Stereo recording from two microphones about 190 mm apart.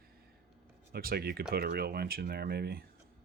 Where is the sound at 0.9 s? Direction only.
55° right (ahead or behind).